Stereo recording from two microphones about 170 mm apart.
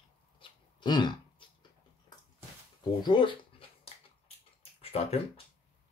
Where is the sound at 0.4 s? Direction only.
25° left (ahead or behind).